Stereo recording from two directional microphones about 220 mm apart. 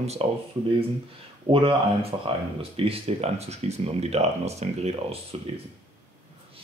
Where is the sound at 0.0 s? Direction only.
30° right (ahead or behind).